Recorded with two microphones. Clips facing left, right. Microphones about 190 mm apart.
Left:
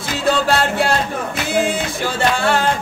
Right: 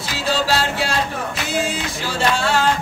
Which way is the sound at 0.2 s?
55° left (ahead or behind).